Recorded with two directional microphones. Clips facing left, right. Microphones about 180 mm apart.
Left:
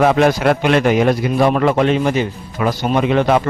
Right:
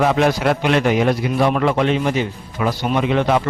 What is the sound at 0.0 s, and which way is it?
A man's voice, 50° left (ahead or behind).